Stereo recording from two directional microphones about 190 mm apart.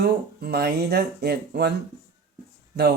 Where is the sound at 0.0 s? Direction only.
55° right (ahead or behind).